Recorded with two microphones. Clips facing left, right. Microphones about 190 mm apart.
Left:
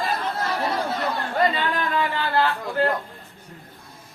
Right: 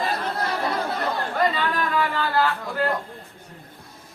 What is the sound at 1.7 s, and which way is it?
Singing, 25° left (ahead or behind).